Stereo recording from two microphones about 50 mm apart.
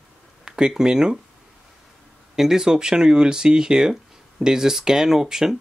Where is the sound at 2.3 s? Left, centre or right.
Centre.